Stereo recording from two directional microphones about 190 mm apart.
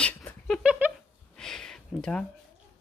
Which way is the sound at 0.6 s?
10° right (ahead or behind).